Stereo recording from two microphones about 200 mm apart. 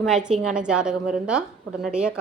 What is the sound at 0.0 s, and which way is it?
A woman's voice, 5° right (ahead or behind).